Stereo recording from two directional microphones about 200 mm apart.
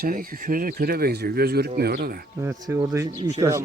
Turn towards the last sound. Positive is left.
turn(degrees=-15)  # may be behind; listen again after turning